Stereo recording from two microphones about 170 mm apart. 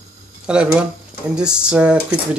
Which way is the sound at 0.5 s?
5° right (ahead or behind).